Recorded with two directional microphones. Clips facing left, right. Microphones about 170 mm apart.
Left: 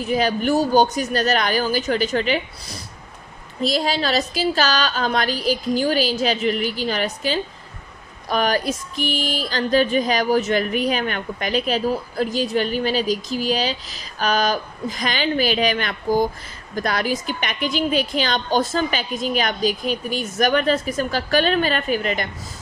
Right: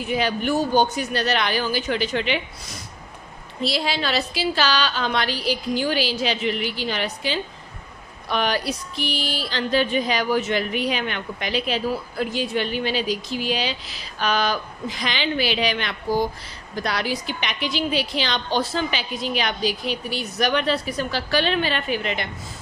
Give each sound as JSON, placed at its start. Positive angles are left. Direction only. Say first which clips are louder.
{"t": 0.0, "sound": "speech", "louder": "left 3 dB", "side_deg": 40}
{"t": 3.6, "sound": "speech", "louder": "left 3 dB", "side_deg": 45}
{"t": 8.3, "sound": "speech", "louder": "left 3 dB", "side_deg": 45}